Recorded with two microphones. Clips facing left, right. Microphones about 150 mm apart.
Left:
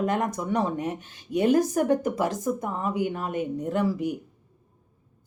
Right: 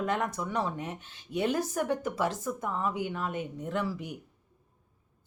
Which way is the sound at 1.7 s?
45° left (ahead or behind).